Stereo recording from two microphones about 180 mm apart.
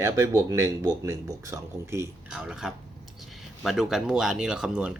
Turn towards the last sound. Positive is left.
turn(degrees=-5)  # may be behind; listen again after turning